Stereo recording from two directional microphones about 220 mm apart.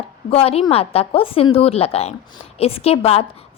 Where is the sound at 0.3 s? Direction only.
25° left (ahead or behind).